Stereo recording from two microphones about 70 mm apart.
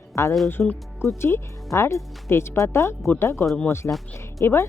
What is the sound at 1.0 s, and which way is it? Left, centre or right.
A woman's voice, left.